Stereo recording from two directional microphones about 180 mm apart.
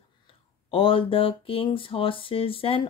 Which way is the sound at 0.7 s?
30° left (ahead or behind).